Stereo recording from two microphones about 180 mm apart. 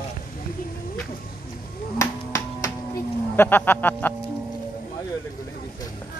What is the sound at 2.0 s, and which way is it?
Cattle, 15° left (ahead or behind).